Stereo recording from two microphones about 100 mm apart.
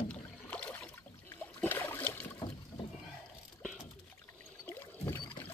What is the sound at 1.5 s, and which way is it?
Boat, 20° left (ahead or behind).